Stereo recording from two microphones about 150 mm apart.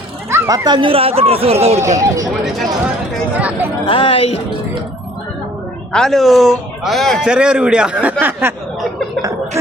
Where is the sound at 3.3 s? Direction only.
10° right (ahead or behind).